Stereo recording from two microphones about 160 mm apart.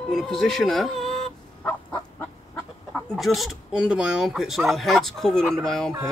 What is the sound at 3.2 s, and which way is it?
Speech, centre (ahead or behind).